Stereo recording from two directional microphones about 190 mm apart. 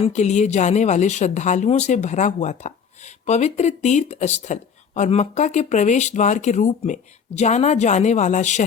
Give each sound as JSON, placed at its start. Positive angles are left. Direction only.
{"t": 0.0, "sound": "speech", "side_deg": 35}